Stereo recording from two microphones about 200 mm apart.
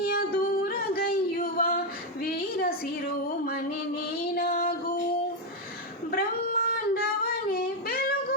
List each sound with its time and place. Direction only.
0.0 s singing: 50° left (ahead or behind)
2.2 s a sound: 50° left (ahead or behind)
4.4 s music: 45° left (ahead or behind)
6.1 s child singing: 50° left (ahead or behind)